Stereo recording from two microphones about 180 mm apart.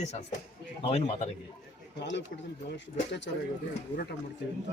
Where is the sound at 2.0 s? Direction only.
80° left.